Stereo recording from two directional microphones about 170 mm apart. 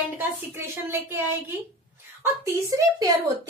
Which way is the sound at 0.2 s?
15° right (ahead or behind).